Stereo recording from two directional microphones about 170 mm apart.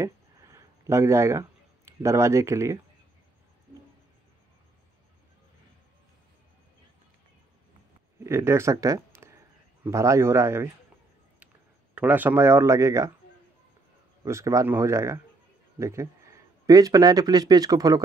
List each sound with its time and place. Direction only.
0.0 s a sound: 15° right (ahead or behind)
8.2 s a man's voice: 15° right (ahead or behind)
11.9 s a man's voice: 10° right (ahead or behind)
14.2 s a man's voice: 15° right (ahead or behind)